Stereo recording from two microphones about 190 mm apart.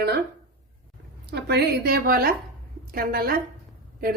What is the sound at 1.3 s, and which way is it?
A woman's voice, 60° right (ahead or behind).